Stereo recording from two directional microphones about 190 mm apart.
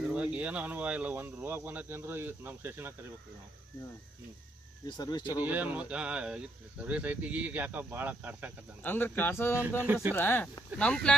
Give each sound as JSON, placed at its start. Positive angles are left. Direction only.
{"t": 0.0, "sound": "speech", "side_deg": -5}
{"t": 4.9, "sound": "speech", "side_deg": 20}
{"t": 5.4, "sound": "speech", "side_deg": -10}
{"t": 8.8, "sound": "speech", "side_deg": 10}
{"t": 9.8, "sound": "speech", "side_deg": -10}
{"t": 10.2, "sound": "speech", "side_deg": 10}